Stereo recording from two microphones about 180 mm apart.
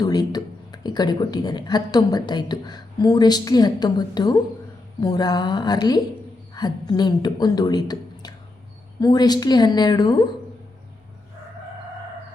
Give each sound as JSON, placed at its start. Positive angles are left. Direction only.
{"t": 0.0, "sound": "speech", "side_deg": 20}